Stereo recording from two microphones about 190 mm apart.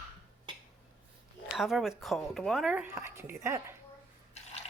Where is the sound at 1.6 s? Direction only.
Centre (ahead or behind).